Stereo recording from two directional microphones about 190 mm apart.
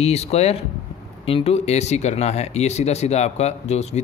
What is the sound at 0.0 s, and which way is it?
Speech, 35° left (ahead or behind).